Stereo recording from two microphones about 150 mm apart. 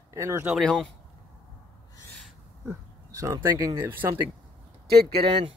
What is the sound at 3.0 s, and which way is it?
Speech, 20° right (ahead or behind).